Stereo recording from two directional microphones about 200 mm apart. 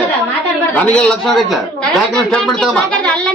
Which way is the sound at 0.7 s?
5° left (ahead or behind).